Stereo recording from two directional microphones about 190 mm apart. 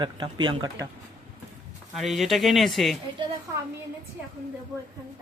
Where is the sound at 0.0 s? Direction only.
25° right (ahead or behind).